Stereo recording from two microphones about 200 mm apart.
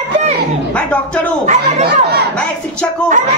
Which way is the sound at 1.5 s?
35° right (ahead or behind).